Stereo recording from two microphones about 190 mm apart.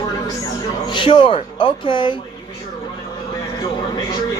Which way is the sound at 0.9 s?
25° left (ahead or behind).